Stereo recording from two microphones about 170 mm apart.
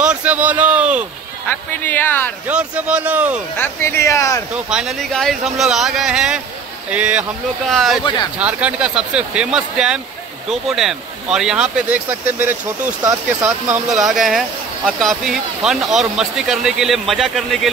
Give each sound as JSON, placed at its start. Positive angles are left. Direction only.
{"t": 0.0, "sound": "a man's voice", "side_deg": -5}
{"t": 1.7, "sound": "speech", "side_deg": 10}
{"t": 2.4, "sound": "speech", "side_deg": -5}
{"t": 3.5, "sound": "speech", "side_deg": 10}
{"t": 4.6, "sound": "speech", "side_deg": 0}
{"t": 13.8, "sound": "speech", "side_deg": 0}